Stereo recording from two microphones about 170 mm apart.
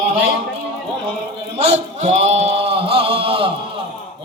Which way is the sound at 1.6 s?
40° right (ahead or behind).